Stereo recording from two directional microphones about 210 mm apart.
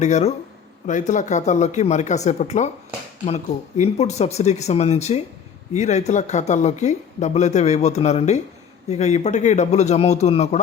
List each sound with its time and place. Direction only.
0.0 s speech: 35° left (ahead or behind)